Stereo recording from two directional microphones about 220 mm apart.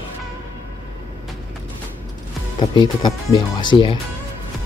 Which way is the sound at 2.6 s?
20° left (ahead or behind).